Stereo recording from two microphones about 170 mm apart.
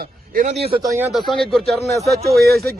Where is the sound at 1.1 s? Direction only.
Centre (ahead or behind).